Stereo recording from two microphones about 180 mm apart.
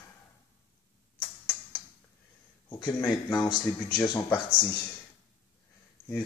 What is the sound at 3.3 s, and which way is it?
Speech, 25° left (ahead or behind).